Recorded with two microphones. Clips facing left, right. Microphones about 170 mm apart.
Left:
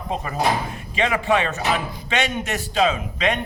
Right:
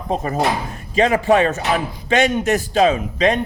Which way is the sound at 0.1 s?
40° right (ahead or behind).